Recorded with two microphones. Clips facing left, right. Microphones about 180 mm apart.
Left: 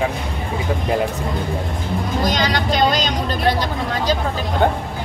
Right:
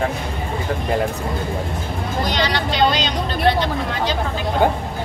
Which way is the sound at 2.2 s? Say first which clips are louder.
Even; 45° left (ahead or behind).